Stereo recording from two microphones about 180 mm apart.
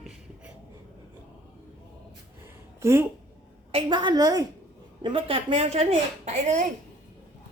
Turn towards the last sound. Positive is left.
turn(degrees=-40)  # may be behind; listen again after turning